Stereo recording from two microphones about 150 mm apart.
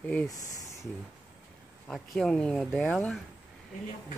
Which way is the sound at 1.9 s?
5° left (ahead or behind).